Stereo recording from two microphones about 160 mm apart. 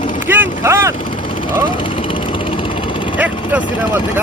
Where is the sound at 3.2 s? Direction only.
10° right (ahead or behind).